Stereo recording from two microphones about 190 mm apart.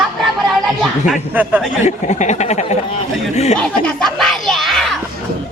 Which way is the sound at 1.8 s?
40° left (ahead or behind).